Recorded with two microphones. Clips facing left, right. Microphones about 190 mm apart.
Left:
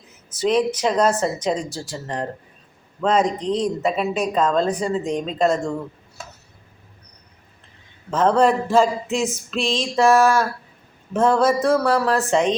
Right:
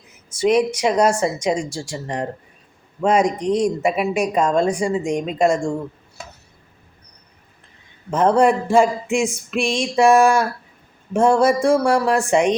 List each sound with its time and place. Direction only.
0.3 s speech: 10° right (ahead or behind)
8.1 s speech: 10° right (ahead or behind)